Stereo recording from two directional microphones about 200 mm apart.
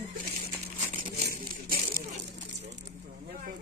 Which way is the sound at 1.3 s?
45° right (ahead or behind).